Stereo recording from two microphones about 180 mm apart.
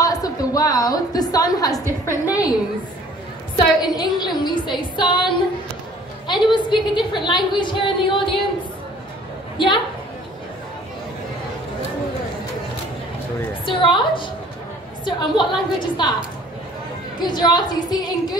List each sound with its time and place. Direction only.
0.0 s a sound: 20° left (ahead or behind)
3.5 s a woman's voice: 25° left (ahead or behind)
9.6 s a woman's voice: 25° left (ahead or behind)
13.7 s a woman's voice: 25° left (ahead or behind)
17.2 s a woman's voice: 25° left (ahead or behind)